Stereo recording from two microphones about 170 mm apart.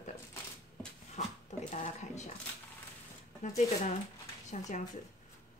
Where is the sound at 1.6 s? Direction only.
45° left (ahead or behind).